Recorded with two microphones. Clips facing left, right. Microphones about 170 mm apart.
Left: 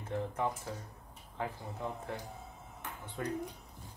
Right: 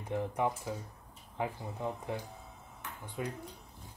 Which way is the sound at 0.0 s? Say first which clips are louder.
Right 2 dB; 15° right (ahead or behind).